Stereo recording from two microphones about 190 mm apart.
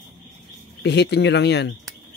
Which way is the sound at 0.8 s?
65° left (ahead or behind).